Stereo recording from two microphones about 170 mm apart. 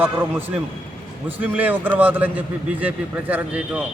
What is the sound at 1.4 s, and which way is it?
Speech, 10° right (ahead or behind).